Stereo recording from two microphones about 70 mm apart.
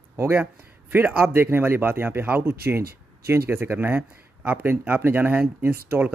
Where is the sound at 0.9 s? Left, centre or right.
Right.